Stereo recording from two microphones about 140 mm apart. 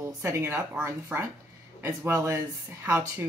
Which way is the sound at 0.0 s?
20° right (ahead or behind).